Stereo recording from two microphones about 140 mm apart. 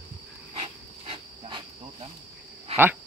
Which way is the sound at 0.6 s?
40° right (ahead or behind).